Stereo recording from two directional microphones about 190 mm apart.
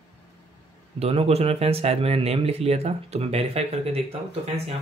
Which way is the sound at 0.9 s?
30° right (ahead or behind).